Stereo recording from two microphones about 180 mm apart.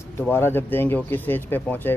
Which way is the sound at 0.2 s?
10° left (ahead or behind).